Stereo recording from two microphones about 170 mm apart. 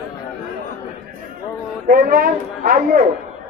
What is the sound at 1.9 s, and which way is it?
A man's voice, 55° right (ahead or behind).